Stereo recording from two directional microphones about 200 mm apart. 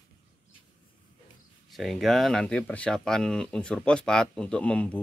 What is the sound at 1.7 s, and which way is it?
Speech, centre (ahead or behind).